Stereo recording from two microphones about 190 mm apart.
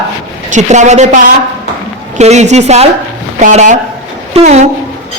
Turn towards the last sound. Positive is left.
turn(degrees=-35)  # may be behind; listen again after turning